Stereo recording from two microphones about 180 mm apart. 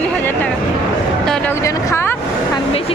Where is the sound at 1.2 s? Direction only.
5° left (ahead or behind).